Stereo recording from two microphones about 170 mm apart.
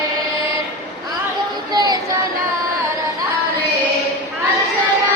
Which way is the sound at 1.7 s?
25° right (ahead or behind).